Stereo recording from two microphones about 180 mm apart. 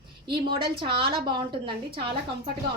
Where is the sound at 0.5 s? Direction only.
25° right (ahead or behind).